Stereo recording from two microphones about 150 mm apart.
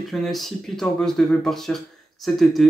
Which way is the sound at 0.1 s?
Centre (ahead or behind).